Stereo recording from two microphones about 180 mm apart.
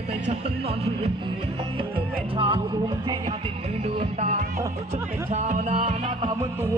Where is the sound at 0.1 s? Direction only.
35° right (ahead or behind).